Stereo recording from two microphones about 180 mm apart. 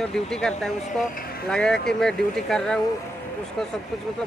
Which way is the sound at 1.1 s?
55° left (ahead or behind).